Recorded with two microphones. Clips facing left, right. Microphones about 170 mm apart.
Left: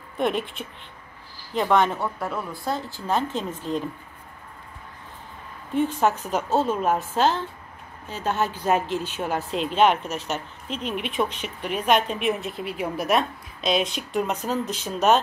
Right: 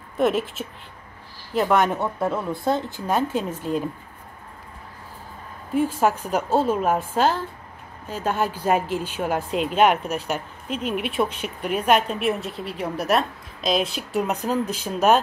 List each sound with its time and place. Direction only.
0.2 s a woman's voice: 5° right (ahead or behind)
2.0 s a woman's voice: 20° right (ahead or behind)
5.8 s a woman's voice: 10° right (ahead or behind)